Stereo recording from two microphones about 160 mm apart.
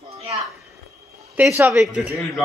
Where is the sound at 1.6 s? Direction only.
5° right (ahead or behind).